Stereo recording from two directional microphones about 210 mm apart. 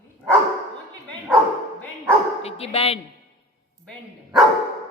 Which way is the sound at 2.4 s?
30° left (ahead or behind).